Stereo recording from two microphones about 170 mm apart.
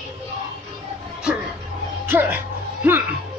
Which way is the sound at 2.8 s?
10° right (ahead or behind).